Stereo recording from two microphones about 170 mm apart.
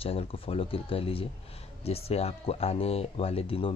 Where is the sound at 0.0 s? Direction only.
35° left (ahead or behind).